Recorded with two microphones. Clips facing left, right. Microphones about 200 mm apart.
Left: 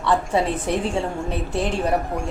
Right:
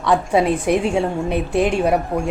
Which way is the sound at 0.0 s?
15° right (ahead or behind).